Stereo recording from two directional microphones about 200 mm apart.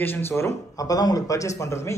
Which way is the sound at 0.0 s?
10° left (ahead or behind).